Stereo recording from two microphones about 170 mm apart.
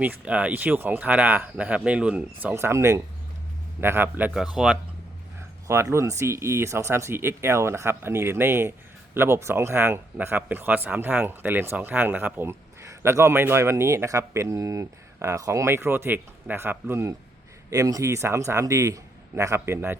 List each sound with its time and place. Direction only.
0.0 s speech: 10° right (ahead or behind)
5.6 s speech: 15° right (ahead or behind)